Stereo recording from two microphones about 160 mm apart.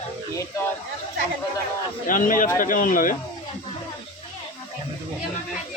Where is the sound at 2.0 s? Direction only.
55° left (ahead or behind).